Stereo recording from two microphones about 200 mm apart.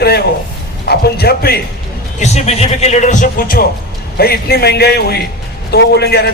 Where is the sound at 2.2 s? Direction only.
35° left (ahead or behind).